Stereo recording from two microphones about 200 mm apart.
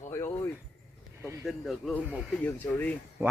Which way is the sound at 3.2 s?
10° right (ahead or behind).